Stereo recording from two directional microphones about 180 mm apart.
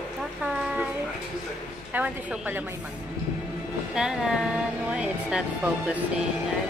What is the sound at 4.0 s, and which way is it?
Speech, 5° right (ahead or behind).